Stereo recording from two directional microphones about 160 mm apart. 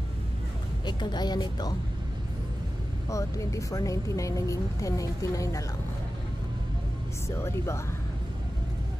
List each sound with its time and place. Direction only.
0.8 s speech: 25° left (ahead or behind)
3.1 s speech: 20° left (ahead or behind)
7.2 s speech: 15° left (ahead or behind)